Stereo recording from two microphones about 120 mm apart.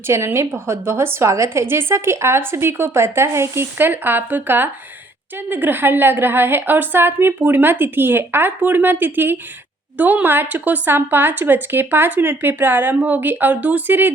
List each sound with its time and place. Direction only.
0.1 s a woman's voice: 20° right (ahead or behind)